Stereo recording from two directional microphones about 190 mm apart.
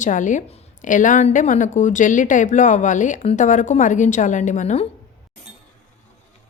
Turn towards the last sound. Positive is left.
turn(degrees=35)  # may be behind; listen again after turning